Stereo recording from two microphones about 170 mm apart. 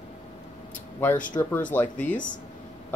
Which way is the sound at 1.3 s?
25° left (ahead or behind).